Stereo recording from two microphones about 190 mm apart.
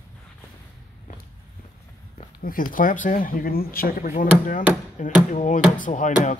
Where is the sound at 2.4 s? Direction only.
45° left (ahead or behind).